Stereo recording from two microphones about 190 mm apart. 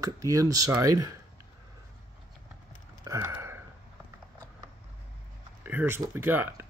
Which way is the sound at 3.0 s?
15° right (ahead or behind).